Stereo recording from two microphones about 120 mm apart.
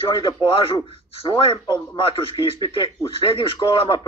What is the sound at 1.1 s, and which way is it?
Speech, 45° left (ahead or behind).